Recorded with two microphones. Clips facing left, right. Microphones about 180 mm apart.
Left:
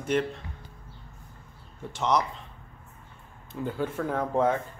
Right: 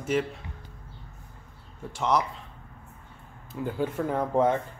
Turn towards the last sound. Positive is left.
turn(degrees=-5)  # may be behind; listen again after turning